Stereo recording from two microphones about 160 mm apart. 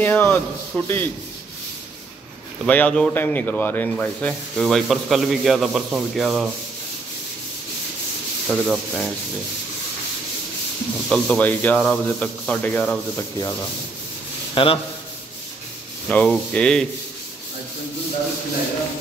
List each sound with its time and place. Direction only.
0.0 s a man's voice: 10° left (ahead or behind)
2.6 s speech: 5° left (ahead or behind)
8.5 s speech: centre (ahead or behind)
11.1 s a man's voice: 5° left (ahead or behind)
14.5 s a man's voice: 35° left (ahead or behind)
16.1 s a man's voice: 10° left (ahead or behind)